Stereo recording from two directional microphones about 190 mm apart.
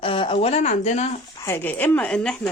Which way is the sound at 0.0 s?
30° left (ahead or behind).